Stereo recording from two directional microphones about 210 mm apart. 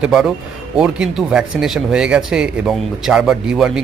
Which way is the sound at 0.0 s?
5° right (ahead or behind).